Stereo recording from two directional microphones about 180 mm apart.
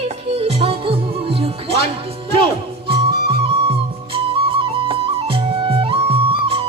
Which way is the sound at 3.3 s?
30° right (ahead or behind).